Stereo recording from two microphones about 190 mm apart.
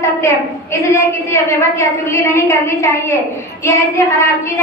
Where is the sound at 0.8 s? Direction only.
15° left (ahead or behind).